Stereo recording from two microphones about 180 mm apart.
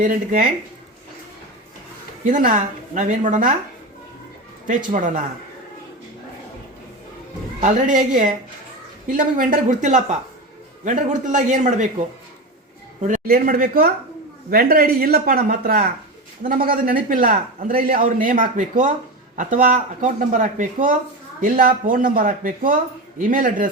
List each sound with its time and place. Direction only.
0.0 s a man's voice: 50° right (ahead or behind)
2.2 s a man's voice: 50° right (ahead or behind)
4.9 s a man's voice: 45° right (ahead or behind)
7.6 s a man's voice: 45° right (ahead or behind)
13.2 s a man's voice: 55° right (ahead or behind)